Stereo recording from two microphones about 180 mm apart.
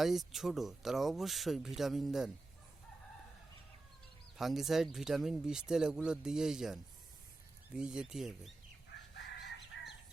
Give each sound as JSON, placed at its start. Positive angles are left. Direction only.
{"t": 0.0, "sound": "speech", "side_deg": 0}
{"t": 4.4, "sound": "speech", "side_deg": 0}
{"t": 8.9, "sound": "chicken", "side_deg": 75}